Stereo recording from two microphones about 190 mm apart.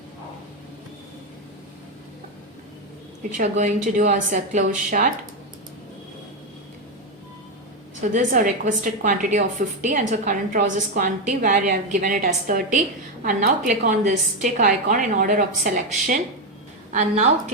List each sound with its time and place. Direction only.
3.3 s a woman's voice: 40° right (ahead or behind)
8.0 s a woman's voice: 40° right (ahead or behind)